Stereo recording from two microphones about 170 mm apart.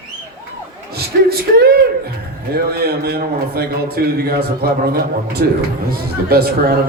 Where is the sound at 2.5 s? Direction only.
65° right (ahead or behind).